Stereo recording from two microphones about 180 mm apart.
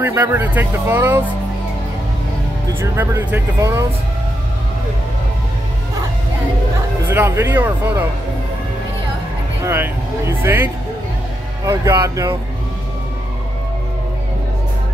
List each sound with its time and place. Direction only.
0.0 s speech: 10° right (ahead or behind)
2.8 s speech: 10° right (ahead or behind)
7.1 s speech: 15° right (ahead or behind)
9.7 s speech: 15° right (ahead or behind)